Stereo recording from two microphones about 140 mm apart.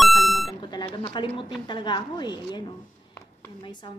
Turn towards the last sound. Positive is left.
turn(degrees=35)  # may be behind; listen again after turning